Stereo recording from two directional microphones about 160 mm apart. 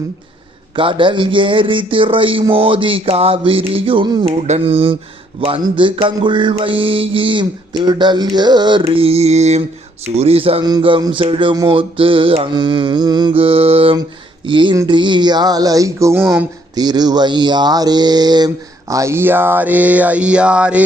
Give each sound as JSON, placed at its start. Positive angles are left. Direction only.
{"t": 0.8, "sound": "music", "side_deg": -30}
{"t": 4.4, "sound": "music", "side_deg": -40}
{"t": 14.8, "sound": "speech", "side_deg": -30}